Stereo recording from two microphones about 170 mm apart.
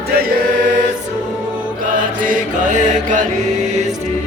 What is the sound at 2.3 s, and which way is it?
Mantra, 50° right (ahead or behind).